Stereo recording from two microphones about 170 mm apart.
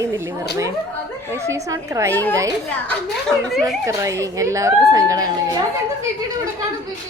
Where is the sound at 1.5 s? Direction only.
20° right (ahead or behind).